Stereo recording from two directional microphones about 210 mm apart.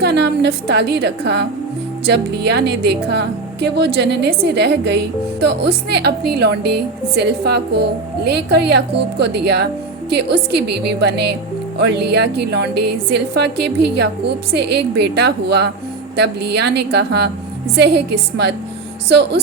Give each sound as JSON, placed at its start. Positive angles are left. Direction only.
{"t": 0.0, "sound": "speech", "side_deg": -55}